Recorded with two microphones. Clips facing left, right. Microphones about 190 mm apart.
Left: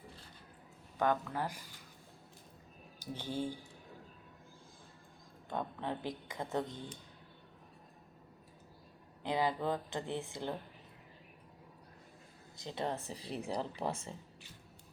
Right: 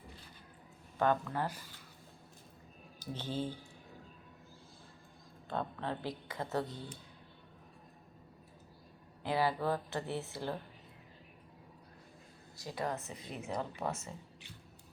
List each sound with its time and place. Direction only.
1.3 s speech: 10° left (ahead or behind)
3.0 s speech: 10° left (ahead or behind)
5.5 s speech: 15° left (ahead or behind)
9.2 s speech: 20° left (ahead or behind)
12.6 s speech: 25° left (ahead or behind)